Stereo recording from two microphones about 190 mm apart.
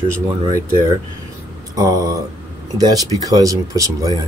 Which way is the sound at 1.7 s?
20° right (ahead or behind).